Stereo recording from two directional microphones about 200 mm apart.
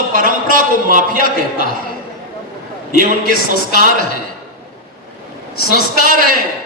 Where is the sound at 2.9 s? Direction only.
45° right (ahead or behind).